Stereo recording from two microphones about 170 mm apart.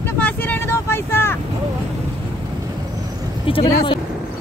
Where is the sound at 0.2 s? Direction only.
10° left (ahead or behind).